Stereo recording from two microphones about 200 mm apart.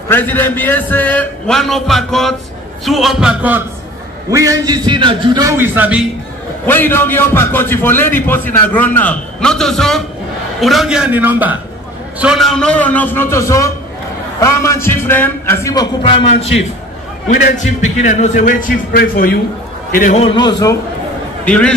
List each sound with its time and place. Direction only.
0.1 s a man's voice: 10° left (ahead or behind); by 6.0 s 5° right (ahead or behind)
6.6 s a man's voice: 10° left (ahead or behind); by 19.3 s 50° left (ahead or behind)
20.0 s a man's voice: 35° left (ahead or behind)
21.5 s a man's voice: 5° left (ahead or behind)